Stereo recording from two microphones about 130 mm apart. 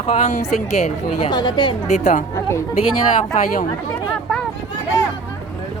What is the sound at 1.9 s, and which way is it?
Speech, 65° left (ahead or behind).